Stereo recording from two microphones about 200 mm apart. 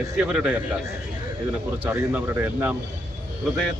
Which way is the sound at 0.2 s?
5° right (ahead or behind).